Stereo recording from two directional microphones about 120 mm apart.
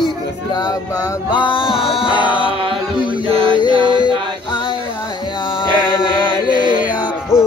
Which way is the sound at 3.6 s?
40° right (ahead or behind).